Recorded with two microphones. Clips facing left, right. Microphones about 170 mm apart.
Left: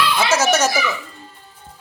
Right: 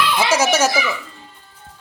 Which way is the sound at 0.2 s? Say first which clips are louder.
Right 1 dB; 10° right (ahead or behind).